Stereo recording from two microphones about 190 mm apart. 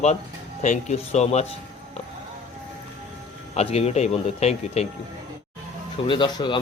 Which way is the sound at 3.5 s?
30° left (ahead or behind).